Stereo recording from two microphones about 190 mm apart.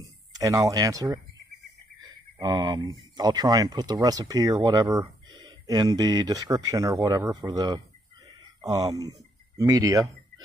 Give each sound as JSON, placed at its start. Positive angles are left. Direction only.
{"t": 0.0, "sound": "speech", "side_deg": -20}